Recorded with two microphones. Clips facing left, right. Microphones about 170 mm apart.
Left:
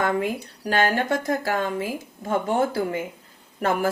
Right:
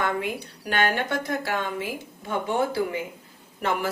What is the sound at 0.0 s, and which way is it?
Speech, 40° left (ahead or behind).